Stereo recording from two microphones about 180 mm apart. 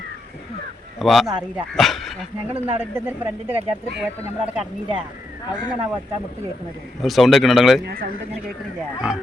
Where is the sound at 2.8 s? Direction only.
10° right (ahead or behind).